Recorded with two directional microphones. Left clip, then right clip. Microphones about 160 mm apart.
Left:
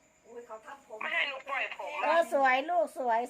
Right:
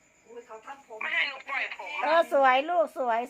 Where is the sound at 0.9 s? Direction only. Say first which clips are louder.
Right 3 dB; 15° left (ahead or behind).